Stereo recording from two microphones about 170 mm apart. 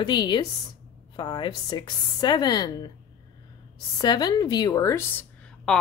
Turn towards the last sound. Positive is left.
turn(degrees=5)  # may be behind; listen again after turning